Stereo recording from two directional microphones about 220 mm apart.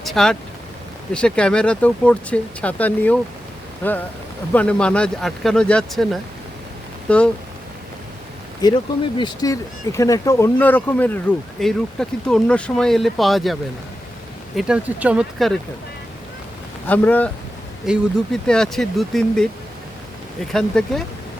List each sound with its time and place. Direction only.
0.0 s vehicle: centre (ahead or behind)
1.1 s speech: 5° left (ahead or behind)
8.6 s speech: 20° left (ahead or behind); by 15.5 s centre (ahead or behind)
16.8 s speech: 10° left (ahead or behind)
20.5 s speech: centre (ahead or behind)